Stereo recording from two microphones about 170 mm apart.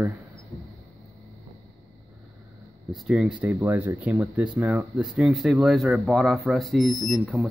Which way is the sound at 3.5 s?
15° right (ahead or behind).